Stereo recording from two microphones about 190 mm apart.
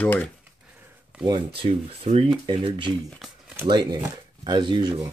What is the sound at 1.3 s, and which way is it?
Speech, 30° right (ahead or behind).